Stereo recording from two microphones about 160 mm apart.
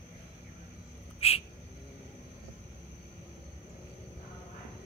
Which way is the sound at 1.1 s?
40° left (ahead or behind).